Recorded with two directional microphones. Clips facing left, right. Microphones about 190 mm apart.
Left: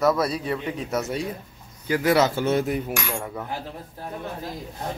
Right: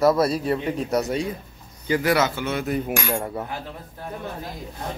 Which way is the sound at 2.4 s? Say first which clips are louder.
Left 5 dB; 40° left (ahead or behind).